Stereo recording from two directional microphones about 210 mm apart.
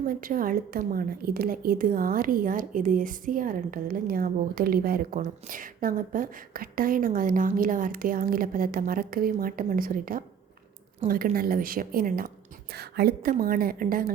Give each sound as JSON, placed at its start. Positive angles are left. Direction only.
{"t": 0.1, "sound": "a woman's voice", "side_deg": -40}